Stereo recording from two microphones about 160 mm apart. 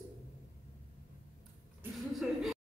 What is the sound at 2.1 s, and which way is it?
Speech, centre (ahead or behind).